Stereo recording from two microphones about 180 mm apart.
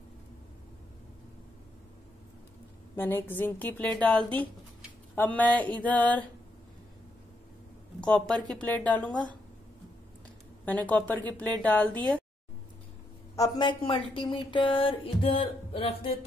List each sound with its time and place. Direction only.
3.0 s a woman's voice: 10° left (ahead or behind)
5.1 s a woman's voice: 10° left (ahead or behind)
8.0 s a woman's voice: 5° left (ahead or behind)
10.6 s a woman's voice: 10° left (ahead or behind)
13.4 s speech: 25° left (ahead or behind)